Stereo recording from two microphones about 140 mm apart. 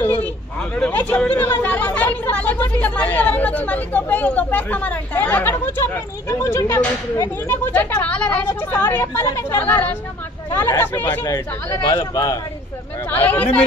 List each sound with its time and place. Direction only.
0.2 s speech: 10° left (ahead or behind); by 12.4 s 25° left (ahead or behind)
13.1 s speech: 10° left (ahead or behind)